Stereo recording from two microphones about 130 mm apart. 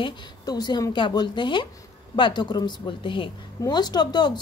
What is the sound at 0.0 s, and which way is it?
A woman's voice, 30° left (ahead or behind).